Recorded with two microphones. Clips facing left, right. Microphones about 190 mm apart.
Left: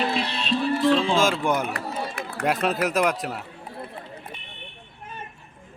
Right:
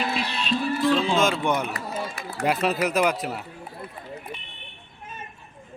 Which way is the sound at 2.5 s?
5° right (ahead or behind).